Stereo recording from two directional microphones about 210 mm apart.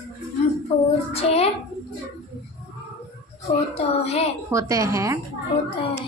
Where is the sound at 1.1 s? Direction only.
30° left (ahead or behind).